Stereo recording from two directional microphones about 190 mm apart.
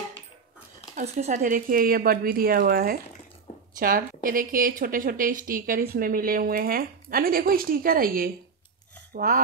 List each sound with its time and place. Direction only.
0.9 s speech: 35° right (ahead or behind)